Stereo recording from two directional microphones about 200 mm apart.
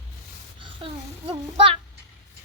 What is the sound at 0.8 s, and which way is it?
Speech, 30° right (ahead or behind).